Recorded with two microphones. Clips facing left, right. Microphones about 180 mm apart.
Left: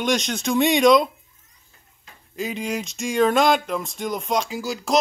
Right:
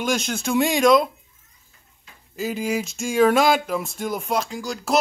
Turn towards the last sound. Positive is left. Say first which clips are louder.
# left 1 dB
turn(degrees=0)  # may be behind; listen again after turning